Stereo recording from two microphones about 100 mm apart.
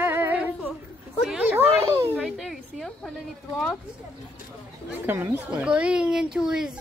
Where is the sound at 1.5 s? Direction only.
25° right (ahead or behind).